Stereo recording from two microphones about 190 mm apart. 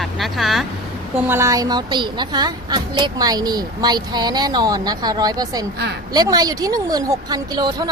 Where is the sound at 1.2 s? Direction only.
10° right (ahead or behind).